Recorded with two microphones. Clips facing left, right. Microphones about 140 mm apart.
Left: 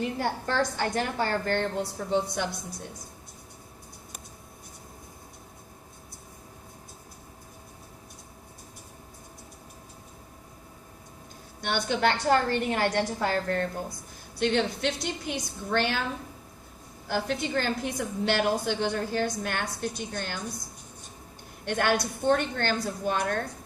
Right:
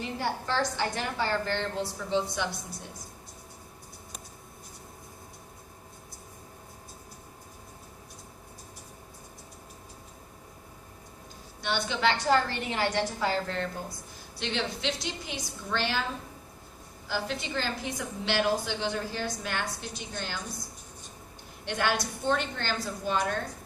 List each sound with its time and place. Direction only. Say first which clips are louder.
0.0 s a woman's voice: left 3 dB; 50° left (ahead or behind)
11.6 s a woman's voice: left 2 dB; 50° left (ahead or behind)
17.1 s a woman's voice: left 4 dB; 50° left (ahead or behind)
21.6 s a woman's voice: left 3 dB; 50° left (ahead or behind)